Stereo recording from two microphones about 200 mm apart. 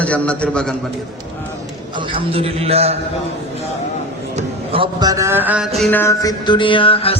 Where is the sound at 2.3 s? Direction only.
30° right (ahead or behind).